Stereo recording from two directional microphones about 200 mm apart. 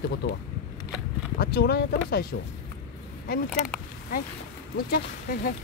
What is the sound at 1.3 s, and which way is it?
Speech, 50° left (ahead or behind).